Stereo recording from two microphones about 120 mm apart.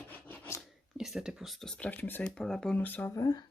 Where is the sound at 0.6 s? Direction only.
Centre (ahead or behind).